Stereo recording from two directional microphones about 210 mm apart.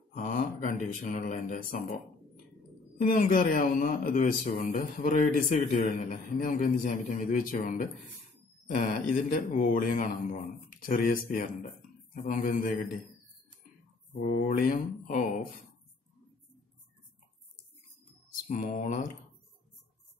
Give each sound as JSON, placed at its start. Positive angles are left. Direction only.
{"t": 0.1, "sound": "speech", "side_deg": 40}
{"t": 3.0, "sound": "a man's voice", "side_deg": 40}
{"t": 14.2, "sound": "a man's voice", "side_deg": 40}
{"t": 18.5, "sound": "a man's voice", "side_deg": 40}